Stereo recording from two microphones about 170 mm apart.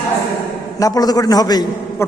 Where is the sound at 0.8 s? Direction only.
20° left (ahead or behind).